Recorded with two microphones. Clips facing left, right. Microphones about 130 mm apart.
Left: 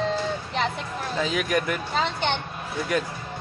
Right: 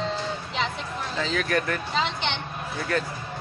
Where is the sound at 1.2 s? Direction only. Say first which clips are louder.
Left 1 dB; 15° left (ahead or behind).